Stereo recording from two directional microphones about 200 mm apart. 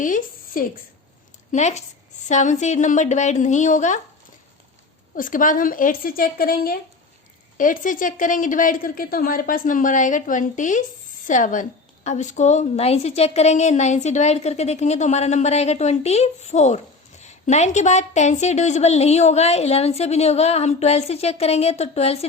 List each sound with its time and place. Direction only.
0.0 s a woman's voice: 45° left (ahead or behind)
5.1 s a woman's voice: 40° left (ahead or behind)